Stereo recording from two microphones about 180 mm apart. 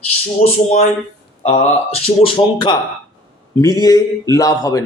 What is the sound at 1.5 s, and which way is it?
Speech, 40° left (ahead or behind).